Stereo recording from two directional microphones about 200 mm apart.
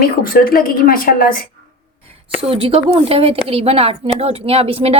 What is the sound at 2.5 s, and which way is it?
A woman's voice, 30° right (ahead or behind).